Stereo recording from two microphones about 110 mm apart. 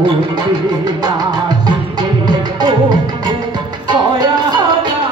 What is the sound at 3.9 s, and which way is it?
Music, 45° right (ahead or behind).